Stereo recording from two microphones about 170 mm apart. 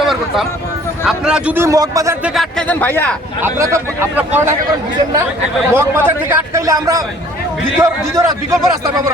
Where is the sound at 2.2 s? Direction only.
Centre (ahead or behind).